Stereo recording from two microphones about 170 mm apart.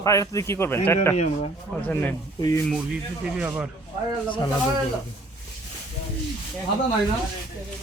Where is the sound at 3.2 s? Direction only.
5° right (ahead or behind).